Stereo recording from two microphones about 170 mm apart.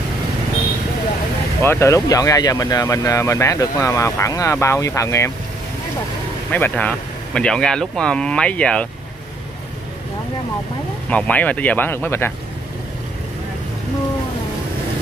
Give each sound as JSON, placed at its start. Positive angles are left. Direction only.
{"t": 1.6, "sound": "speech", "side_deg": 15}
{"t": 6.5, "sound": "speech", "side_deg": 10}
{"t": 11.1, "sound": "speech", "side_deg": 10}